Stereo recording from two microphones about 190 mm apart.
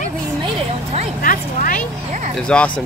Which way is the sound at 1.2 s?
45° left (ahead or behind).